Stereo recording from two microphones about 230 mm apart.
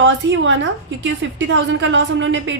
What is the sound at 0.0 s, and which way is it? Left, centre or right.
A woman's voice, right.